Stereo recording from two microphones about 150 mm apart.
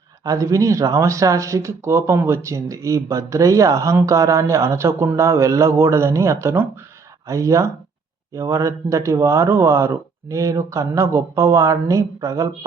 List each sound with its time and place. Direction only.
0.3 s speech: 20° right (ahead or behind)